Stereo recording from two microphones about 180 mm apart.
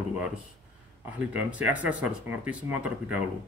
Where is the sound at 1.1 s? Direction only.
5° right (ahead or behind).